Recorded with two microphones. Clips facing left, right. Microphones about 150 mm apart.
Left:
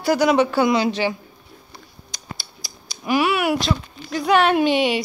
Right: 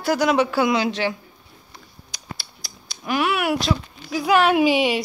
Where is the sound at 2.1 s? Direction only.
Centre (ahead or behind).